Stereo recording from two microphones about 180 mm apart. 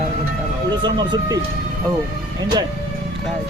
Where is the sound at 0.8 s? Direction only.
25° right (ahead or behind).